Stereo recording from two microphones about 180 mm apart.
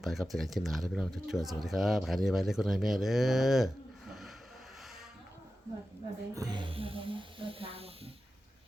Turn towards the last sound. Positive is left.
turn(degrees=-30)  # may be behind; listen again after turning